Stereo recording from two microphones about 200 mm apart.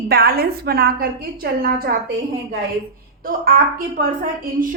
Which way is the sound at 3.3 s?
45° right (ahead or behind).